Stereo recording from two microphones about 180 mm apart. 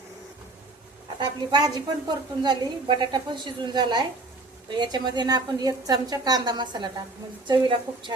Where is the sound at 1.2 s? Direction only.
25° right (ahead or behind).